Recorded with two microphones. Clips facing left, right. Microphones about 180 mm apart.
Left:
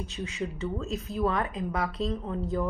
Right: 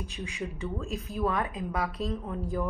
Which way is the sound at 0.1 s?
15° right (ahead or behind).